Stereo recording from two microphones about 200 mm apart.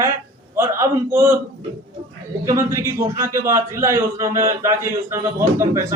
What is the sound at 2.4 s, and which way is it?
A man's voice, 15° right (ahead or behind).